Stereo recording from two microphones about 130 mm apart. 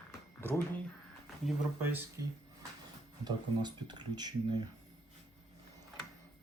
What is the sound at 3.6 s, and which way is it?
Speech, 35° right (ahead or behind).